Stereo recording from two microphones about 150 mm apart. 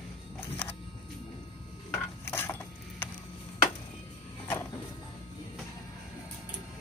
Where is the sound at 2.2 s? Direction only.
15° left (ahead or behind).